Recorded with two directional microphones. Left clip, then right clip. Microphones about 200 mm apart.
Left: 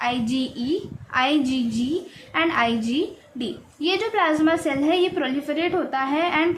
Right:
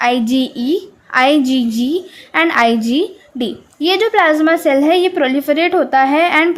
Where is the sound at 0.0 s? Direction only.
40° right (ahead or behind).